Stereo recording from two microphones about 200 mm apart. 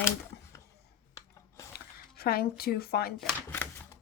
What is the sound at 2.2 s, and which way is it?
Speech, 50° left (ahead or behind).